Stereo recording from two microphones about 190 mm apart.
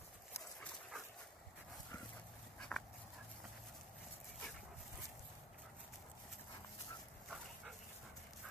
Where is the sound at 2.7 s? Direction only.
5° left (ahead or behind).